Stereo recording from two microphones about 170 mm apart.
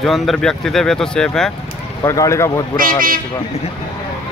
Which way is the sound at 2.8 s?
55° right (ahead or behind).